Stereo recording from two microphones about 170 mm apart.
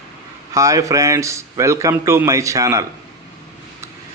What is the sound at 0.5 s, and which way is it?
A man's voice, 20° right (ahead or behind).